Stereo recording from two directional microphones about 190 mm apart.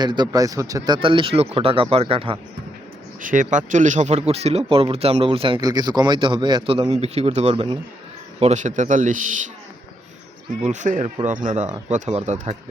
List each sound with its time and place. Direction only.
0.0 s speech: 20° right (ahead or behind)
3.2 s speech: 45° right (ahead or behind)
10.6 s speech: 40° right (ahead or behind)